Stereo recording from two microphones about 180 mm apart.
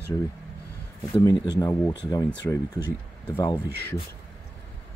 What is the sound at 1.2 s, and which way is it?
Speech, 20° left (ahead or behind).